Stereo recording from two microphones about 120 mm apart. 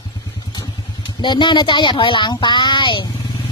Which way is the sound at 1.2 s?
40° left (ahead or behind).